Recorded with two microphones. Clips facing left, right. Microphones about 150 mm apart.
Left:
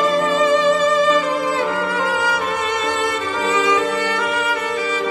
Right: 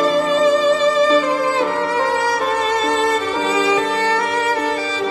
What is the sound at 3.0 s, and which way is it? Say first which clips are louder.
Music: right 3 dB; 35° right (ahead or behind).